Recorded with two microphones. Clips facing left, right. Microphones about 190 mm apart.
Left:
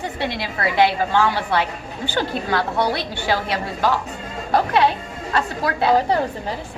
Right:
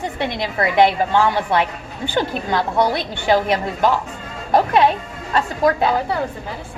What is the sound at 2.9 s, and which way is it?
A woman's voice, 20° right (ahead or behind).